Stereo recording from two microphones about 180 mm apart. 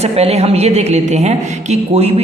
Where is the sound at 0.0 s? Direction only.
35° right (ahead or behind).